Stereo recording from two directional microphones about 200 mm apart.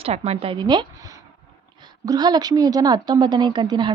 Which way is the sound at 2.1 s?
20° right (ahead or behind).